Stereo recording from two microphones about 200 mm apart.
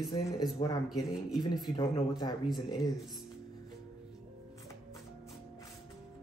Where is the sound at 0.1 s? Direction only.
20° left (ahead or behind).